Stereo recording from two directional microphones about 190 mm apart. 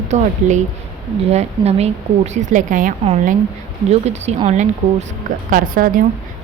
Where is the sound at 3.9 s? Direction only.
35° right (ahead or behind).